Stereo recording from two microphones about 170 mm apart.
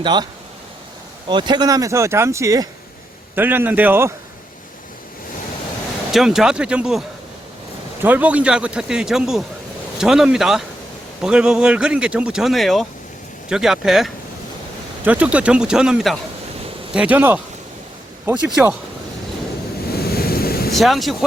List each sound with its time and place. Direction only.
0.0 s speech: 25° right (ahead or behind)
1.3 s a man's voice: 25° right (ahead or behind); by 4.1 s 10° right (ahead or behind)
6.1 s speech: centre (ahead or behind)
8.0 s a man's voice: 10° right (ahead or behind)
20.1 s waves: 65° left (ahead or behind)
20.7 s speech: centre (ahead or behind)